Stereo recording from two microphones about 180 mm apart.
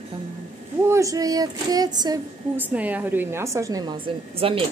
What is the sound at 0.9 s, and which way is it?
A woman's voice, 15° right (ahead or behind).